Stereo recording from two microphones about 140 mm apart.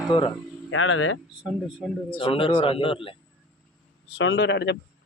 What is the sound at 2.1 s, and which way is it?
Speech, 40° left (ahead or behind).